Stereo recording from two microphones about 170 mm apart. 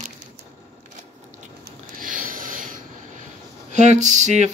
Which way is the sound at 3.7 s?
45° right (ahead or behind).